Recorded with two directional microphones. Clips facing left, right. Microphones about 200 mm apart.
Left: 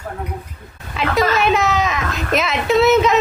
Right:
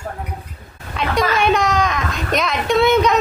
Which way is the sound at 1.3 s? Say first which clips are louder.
Even; 5° left (ahead or behind).